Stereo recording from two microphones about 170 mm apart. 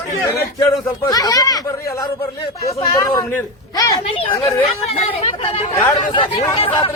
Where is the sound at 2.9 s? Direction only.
20° left (ahead or behind).